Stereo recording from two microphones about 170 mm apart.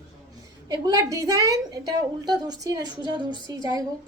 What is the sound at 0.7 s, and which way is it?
A woman's voice, 20° right (ahead or behind).